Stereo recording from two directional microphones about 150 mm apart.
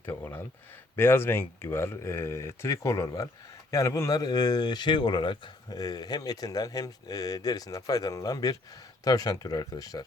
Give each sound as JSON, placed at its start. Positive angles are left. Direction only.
{"t": 0.0, "sound": "speech", "side_deg": 15}